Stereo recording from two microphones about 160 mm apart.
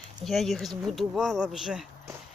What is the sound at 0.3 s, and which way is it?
Speech, centre (ahead or behind).